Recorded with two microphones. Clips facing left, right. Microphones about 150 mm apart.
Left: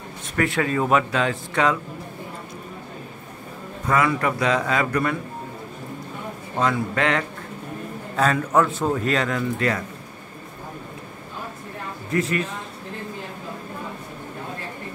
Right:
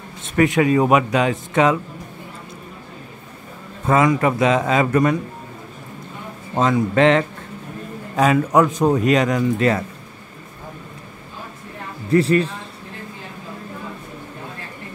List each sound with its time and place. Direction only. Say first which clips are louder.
0.4 s speech: right 7 dB; 15° right (ahead or behind)
3.8 s speech: right 5 dB; 20° right (ahead or behind)
6.6 s speech: right 7 dB; 25° right (ahead or behind)
8.2 s speech: right 4 dB; 10° right (ahead or behind)
12.1 s a man's voice: right 8 dB; 35° right (ahead or behind)